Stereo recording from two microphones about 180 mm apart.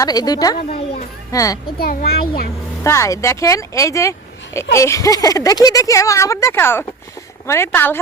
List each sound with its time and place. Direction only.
0.0 s a woman's voice: 20° left (ahead or behind)
1.8 s a child's voice: 55° left (ahead or behind)
2.8 s speech: 15° left (ahead or behind)